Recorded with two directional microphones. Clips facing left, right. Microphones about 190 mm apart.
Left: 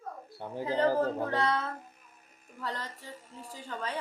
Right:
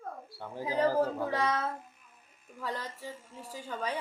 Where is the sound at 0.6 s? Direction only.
10° right (ahead or behind).